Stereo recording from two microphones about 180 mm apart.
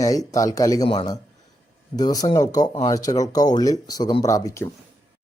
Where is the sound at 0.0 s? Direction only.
20° left (ahead or behind).